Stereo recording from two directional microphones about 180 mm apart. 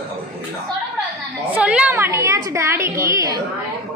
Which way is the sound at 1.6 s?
5° right (ahead or behind).